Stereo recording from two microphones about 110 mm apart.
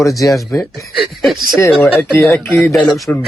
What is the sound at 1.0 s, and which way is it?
Speech, centre (ahead or behind).